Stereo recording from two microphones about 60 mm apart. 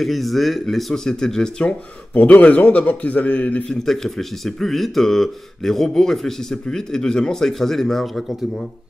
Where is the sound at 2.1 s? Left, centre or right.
Left.